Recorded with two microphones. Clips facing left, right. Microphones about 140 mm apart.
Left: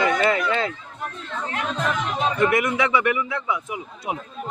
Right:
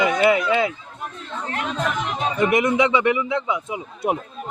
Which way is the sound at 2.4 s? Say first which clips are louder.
Right 4 dB; 20° right (ahead or behind).